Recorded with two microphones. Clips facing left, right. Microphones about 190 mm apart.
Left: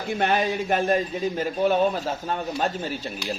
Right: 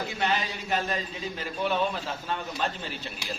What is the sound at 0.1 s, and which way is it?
A man's voice, 50° left (ahead or behind).